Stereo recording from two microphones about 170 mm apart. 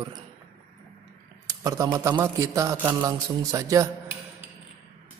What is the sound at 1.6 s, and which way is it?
A man's voice, 20° right (ahead or behind).